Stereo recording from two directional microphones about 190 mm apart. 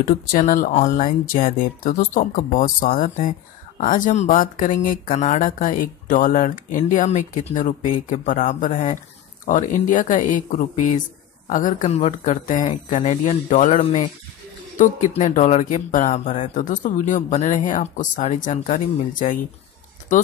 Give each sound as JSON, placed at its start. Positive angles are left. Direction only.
{"t": 0.0, "sound": "speech", "side_deg": 45}